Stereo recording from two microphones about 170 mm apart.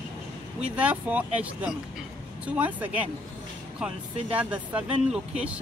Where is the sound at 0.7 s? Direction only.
10° right (ahead or behind).